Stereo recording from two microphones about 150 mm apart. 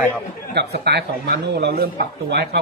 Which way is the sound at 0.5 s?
90° right.